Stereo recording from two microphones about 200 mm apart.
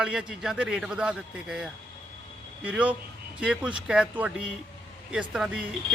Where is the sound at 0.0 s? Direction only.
5° right (ahead or behind).